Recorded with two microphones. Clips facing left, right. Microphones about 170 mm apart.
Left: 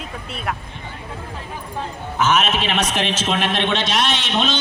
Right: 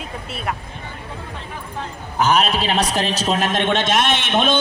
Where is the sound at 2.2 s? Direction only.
35° right (ahead or behind).